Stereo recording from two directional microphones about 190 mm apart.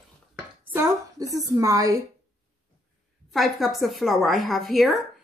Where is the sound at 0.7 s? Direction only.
20° right (ahead or behind).